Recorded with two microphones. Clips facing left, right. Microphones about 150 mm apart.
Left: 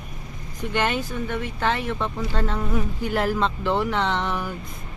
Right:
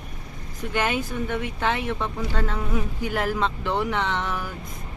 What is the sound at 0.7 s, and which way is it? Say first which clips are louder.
Speech: left 1 dB; 5° right (ahead or behind).